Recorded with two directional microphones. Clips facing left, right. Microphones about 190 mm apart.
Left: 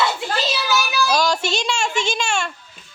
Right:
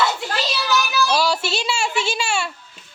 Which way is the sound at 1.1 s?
5° right (ahead or behind).